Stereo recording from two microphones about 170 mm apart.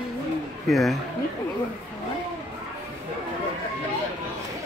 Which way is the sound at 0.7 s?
Centre (ahead or behind).